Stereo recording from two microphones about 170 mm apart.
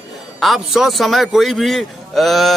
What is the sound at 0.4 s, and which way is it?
Speech, centre (ahead or behind).